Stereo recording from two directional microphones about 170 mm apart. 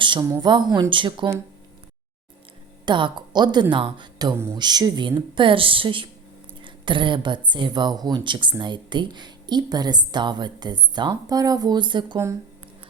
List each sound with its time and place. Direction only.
0.0 s a sound: 30° right (ahead or behind)
0.3 s speech: 25° right (ahead or behind)
2.8 s a woman's voice: 25° right (ahead or behind)